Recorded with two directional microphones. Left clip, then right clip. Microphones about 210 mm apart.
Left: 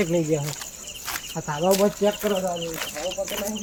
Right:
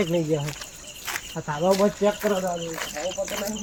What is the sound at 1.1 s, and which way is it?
Cricket, 5° left (ahead or behind).